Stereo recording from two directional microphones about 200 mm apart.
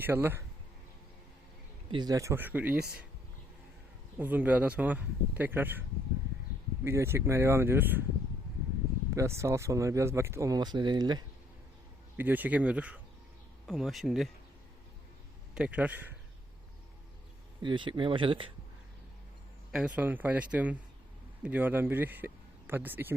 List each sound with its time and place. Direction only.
0.0 s speech: 10° right (ahead or behind)
1.9 s speech: 20° right (ahead or behind)
4.2 s speech: 10° right (ahead or behind)
6.8 s speech: 10° right (ahead or behind)
9.0 s speech: 15° right (ahead or behind)
12.1 s speech: 10° right (ahead or behind)
15.5 s speech: 5° right (ahead or behind)
17.6 s speech: 25° right (ahead or behind)
19.7 s speech: 5° right (ahead or behind)